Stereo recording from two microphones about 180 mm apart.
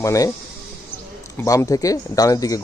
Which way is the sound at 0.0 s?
15° left (ahead or behind).